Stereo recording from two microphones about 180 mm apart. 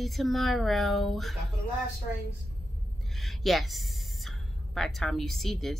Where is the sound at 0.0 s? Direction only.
Centre (ahead or behind).